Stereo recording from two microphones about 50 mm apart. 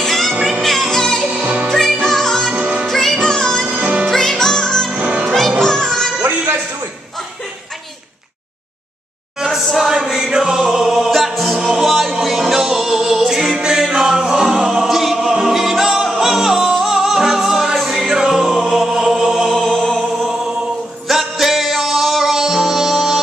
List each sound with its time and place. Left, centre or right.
0.0 s music: centre
2.5 s music: right
2.9 s music: centre
3.7 s music: right
4.0 s music: centre
4.9 s music: right
5.6 s music: centre
9.4 s a sound: centre
9.8 s music: centre
13.3 s a capella: centre
19.5 s music: centre
21.1 s music: centre